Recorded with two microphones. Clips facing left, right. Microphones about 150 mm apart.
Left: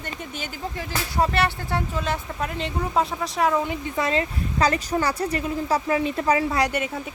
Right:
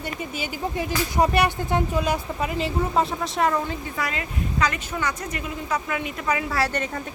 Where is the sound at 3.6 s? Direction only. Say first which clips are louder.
Left 3 dB; 20° left (ahead or behind).